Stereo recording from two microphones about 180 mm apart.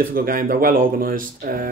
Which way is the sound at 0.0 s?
50° right (ahead or behind).